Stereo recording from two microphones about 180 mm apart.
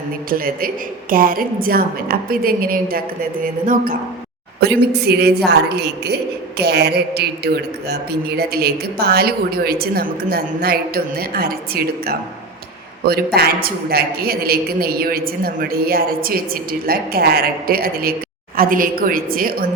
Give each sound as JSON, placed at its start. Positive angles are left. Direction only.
{"t": 0.3, "sound": "a woman's voice", "side_deg": -55}
{"t": 4.6, "sound": "a woman's voice", "side_deg": -65}